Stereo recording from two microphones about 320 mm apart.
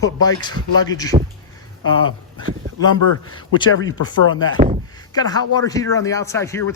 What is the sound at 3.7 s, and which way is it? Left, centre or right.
Speech, left.